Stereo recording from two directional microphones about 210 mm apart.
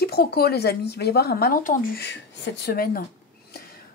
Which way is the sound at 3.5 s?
45° left (ahead or behind).